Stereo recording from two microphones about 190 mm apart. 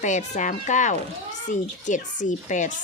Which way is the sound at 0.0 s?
40° left (ahead or behind).